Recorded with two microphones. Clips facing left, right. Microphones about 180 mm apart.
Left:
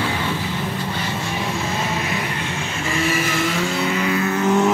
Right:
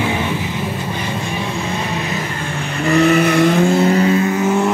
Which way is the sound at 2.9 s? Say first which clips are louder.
Right 10 dB; 65° right (ahead or behind).